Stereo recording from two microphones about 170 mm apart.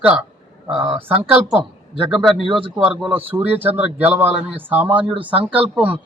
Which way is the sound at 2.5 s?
30° right (ahead or behind).